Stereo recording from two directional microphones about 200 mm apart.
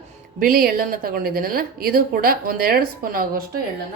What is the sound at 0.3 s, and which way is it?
A woman's voice, 45° right (ahead or behind).